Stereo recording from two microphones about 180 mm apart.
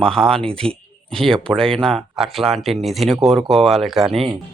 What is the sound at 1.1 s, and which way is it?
Speech, centre (ahead or behind).